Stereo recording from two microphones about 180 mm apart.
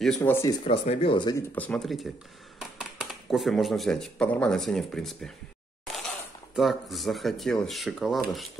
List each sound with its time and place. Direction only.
0.2 s speech: 15° left (ahead or behind)
0.7 s speech: 30° left (ahead or behind)
1.5 s speech: 5° left (ahead or behind)
6.5 s speech: centre (ahead or behind)